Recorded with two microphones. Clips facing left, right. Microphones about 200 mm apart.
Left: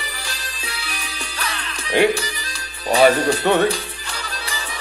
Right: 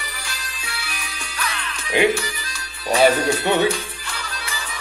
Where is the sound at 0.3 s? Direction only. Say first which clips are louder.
Left 2 dB; 35° left (ahead or behind).